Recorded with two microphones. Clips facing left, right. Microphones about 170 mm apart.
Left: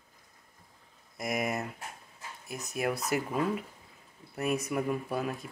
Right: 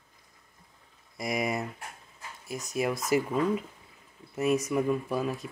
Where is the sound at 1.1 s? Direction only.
Centre (ahead or behind).